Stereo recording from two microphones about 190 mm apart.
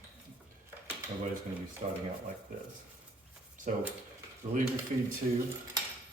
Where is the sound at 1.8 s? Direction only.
45° right (ahead or behind).